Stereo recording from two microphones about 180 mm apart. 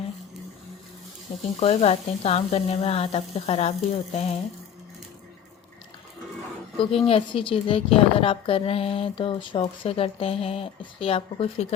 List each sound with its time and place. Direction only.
1.5 s a woman's voice: 35° left (ahead or behind)
6.7 s a woman's voice: 30° left (ahead or behind)